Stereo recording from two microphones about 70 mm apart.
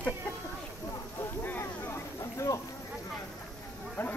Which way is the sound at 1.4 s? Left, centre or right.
Left.